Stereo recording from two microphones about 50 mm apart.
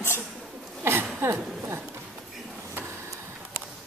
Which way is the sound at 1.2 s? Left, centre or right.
Right.